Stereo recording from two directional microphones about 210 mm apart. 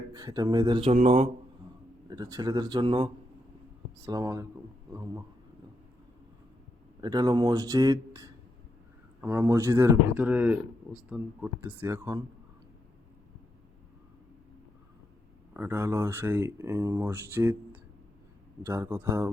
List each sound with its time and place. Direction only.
0.1 s speech: 20° right (ahead or behind)
2.0 s speech: 15° right (ahead or behind)
7.0 s speech: 20° right (ahead or behind)
15.5 s speech: 10° right (ahead or behind)